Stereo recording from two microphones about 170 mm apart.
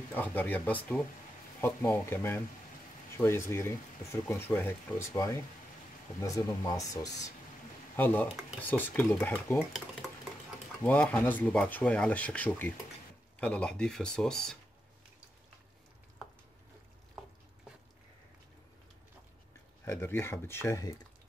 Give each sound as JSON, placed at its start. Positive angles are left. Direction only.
{"t": 0.1, "sound": "speech", "side_deg": 10}
{"t": 7.9, "sound": "speech", "side_deg": 10}
{"t": 9.6, "sound": "speech", "side_deg": -5}
{"t": 10.8, "sound": "speech", "side_deg": 10}
{"t": 19.8, "sound": "speech", "side_deg": 15}